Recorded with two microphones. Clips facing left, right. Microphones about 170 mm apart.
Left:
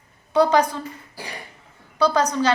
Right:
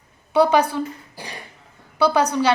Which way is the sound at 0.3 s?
10° right (ahead or behind).